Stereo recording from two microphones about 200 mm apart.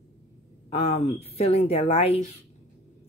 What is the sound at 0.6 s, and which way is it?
Speech, 30° left (ahead or behind).